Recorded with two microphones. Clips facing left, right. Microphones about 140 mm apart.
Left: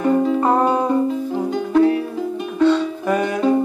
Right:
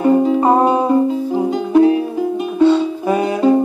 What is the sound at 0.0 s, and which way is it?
Music, 20° right (ahead or behind).